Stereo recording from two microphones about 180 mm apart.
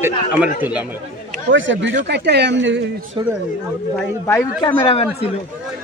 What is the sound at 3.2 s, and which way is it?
Speech, 25° right (ahead or behind).